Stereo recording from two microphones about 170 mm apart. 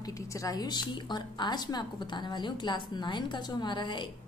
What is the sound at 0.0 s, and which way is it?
A woman's voice, 20° left (ahead or behind).